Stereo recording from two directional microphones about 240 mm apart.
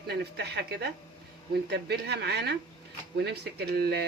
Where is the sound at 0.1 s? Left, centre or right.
Right.